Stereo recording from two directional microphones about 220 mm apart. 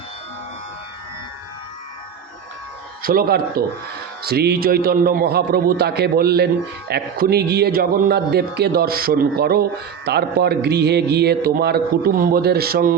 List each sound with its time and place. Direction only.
3.0 s a man's voice: 40° right (ahead or behind)